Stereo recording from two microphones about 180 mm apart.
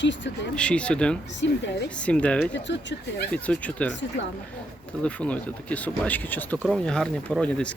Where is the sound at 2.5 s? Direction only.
85° left.